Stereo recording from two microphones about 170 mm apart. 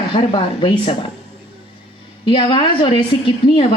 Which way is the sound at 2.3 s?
30° left (ahead or behind).